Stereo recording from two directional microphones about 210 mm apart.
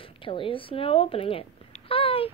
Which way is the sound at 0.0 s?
25° left (ahead or behind).